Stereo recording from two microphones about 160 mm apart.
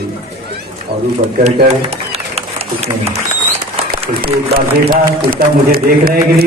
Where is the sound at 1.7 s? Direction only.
40° right (ahead or behind).